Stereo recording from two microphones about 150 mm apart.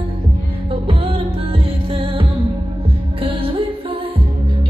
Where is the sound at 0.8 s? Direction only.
40° right (ahead or behind).